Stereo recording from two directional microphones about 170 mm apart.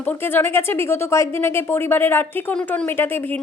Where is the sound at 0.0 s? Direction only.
10° left (ahead or behind).